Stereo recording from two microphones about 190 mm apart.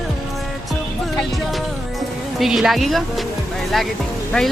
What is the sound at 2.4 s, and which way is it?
Speech, centre (ahead or behind).